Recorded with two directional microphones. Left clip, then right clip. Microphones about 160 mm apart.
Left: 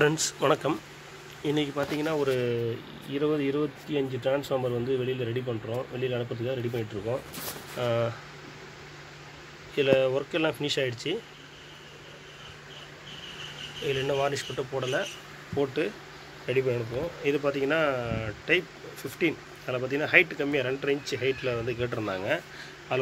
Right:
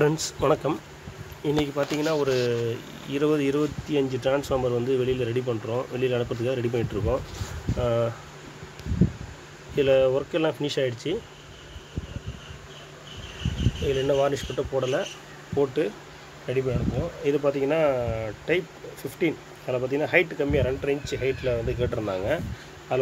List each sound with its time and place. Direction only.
0.0 s speech: 10° right (ahead or behind); by 7.2 s 25° right (ahead or behind)
7.8 s speech: 10° right (ahead or behind)
9.8 s speech: 10° right (ahead or behind)
13.8 s speech: 20° right (ahead or behind)
16.4 s speech: 5° left (ahead or behind)
17.2 s speech: 10° right (ahead or behind)